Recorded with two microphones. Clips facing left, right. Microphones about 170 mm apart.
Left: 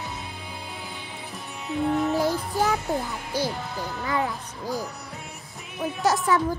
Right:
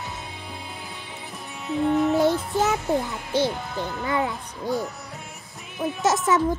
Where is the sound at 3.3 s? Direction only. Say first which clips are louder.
Right 5 dB; 25° right (ahead or behind).